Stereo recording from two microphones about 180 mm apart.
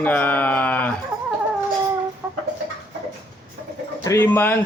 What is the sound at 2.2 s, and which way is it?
Chicken, 10° right (ahead or behind).